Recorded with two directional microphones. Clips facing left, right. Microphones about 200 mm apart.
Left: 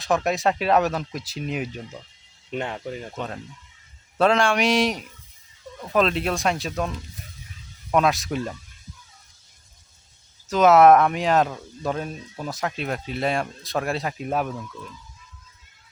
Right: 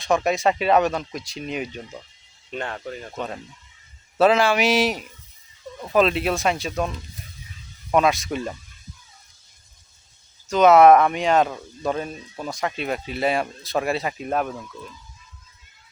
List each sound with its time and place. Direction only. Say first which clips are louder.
0.0 s speech: right 2 dB; centre (ahead or behind)
2.5 s speech: left 1 dB; 15° left (ahead or behind)
3.2 s speech: right 1 dB; 5° right (ahead or behind)
10.5 s speech: right 1 dB; centre (ahead or behind)